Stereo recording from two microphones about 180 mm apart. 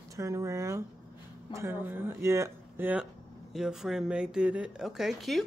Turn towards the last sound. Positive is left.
turn(degrees=0)  # may be behind; listen again after turning